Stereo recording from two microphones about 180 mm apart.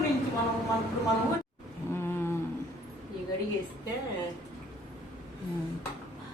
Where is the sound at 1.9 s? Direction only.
10° left (ahead or behind).